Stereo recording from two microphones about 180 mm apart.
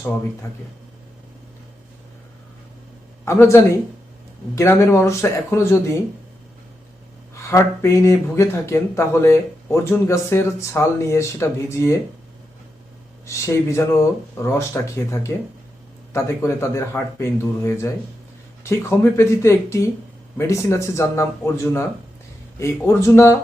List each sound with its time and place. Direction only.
3.2 s speech: 15° left (ahead or behind)
7.3 s speech: 15° left (ahead or behind)
13.2 s speech: 15° left (ahead or behind)